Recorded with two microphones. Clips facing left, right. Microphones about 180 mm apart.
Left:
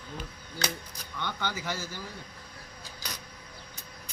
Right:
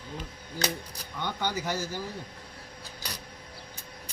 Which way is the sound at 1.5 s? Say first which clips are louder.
Right 3 dB; 40° right (ahead or behind).